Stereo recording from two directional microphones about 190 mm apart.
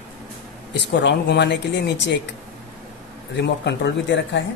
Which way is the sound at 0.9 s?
65° left (ahead or behind).